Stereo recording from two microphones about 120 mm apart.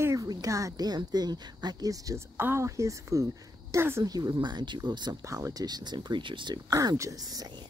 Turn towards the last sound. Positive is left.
turn(degrees=-30)  # may be behind; listen again after turning